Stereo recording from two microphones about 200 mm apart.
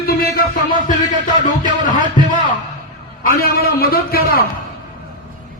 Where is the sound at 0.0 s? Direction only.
50° left (ahead or behind).